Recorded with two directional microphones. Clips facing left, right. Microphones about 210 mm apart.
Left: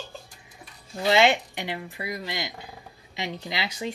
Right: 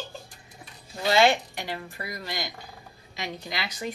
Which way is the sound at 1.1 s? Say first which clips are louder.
Even; 20° left (ahead or behind).